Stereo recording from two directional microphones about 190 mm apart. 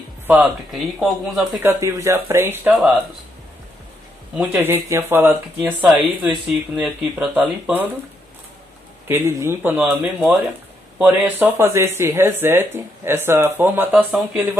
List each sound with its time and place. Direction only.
0.9 s speech: centre (ahead or behind)
1.5 s speech: 15° right (ahead or behind)
2.7 s speech: centre (ahead or behind)
4.4 s speech: 10° right (ahead or behind)
9.0 s speech: 15° right (ahead or behind)